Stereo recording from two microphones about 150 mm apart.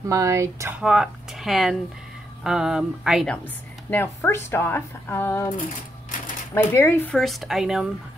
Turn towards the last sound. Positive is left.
turn(degrees=-5)  # may be behind; listen again after turning